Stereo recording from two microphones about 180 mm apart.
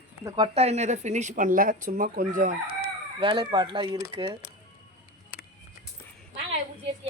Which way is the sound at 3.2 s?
25° right (ahead or behind).